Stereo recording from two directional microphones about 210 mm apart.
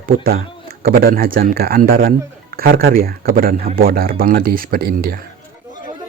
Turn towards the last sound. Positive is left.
turn(degrees=-45)  # may be behind; listen again after turning